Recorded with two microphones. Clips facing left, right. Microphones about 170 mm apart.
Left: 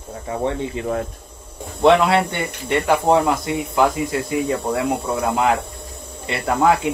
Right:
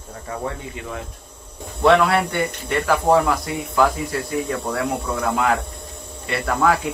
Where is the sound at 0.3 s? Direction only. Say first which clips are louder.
Left 6 dB; 25° left (ahead or behind).